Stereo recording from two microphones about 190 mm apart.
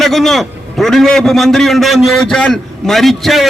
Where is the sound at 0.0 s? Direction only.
Centre (ahead or behind).